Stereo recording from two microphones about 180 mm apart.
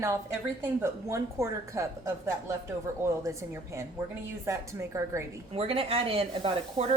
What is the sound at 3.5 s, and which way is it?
A woman's voice, 15° right (ahead or behind).